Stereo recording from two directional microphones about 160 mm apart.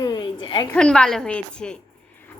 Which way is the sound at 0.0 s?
25° left (ahead or behind).